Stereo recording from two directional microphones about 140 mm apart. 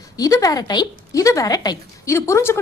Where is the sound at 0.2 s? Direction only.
25° left (ahead or behind).